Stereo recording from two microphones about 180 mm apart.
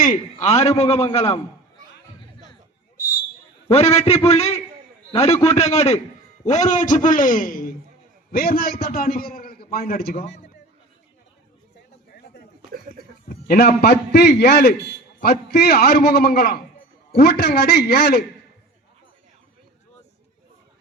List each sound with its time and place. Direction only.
0.0 s a man's voice: 40° left (ahead or behind)
3.7 s a man's voice: 35° left (ahead or behind); by 10.2 s 55° left (ahead or behind)
13.2 s a man's voice: 60° left (ahead or behind)